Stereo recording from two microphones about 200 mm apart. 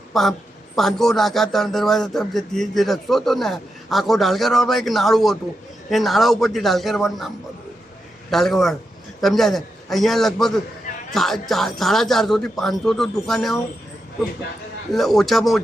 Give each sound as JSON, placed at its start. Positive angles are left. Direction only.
{"t": 0.1, "sound": "a woman's voice", "side_deg": 0}
{"t": 8.3, "sound": "speech", "side_deg": 0}
{"t": 14.9, "sound": "speech", "side_deg": 0}